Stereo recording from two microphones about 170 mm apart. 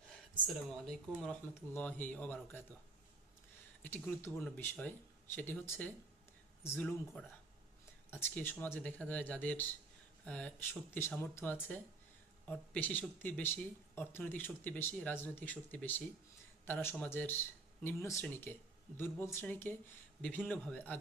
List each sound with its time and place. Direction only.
0.4 s speech: centre (ahead or behind)
3.8 s speech: 10° left (ahead or behind)